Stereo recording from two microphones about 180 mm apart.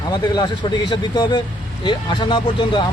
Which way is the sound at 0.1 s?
25° left (ahead or behind).